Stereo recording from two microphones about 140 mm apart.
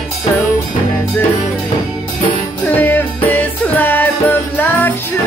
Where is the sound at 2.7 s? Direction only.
15° left (ahead or behind).